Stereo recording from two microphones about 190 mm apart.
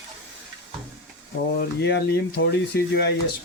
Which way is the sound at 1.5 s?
65° left (ahead or behind).